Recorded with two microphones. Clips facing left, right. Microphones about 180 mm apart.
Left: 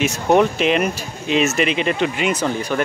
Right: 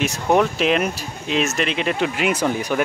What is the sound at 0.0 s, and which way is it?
Speech, centre (ahead or behind).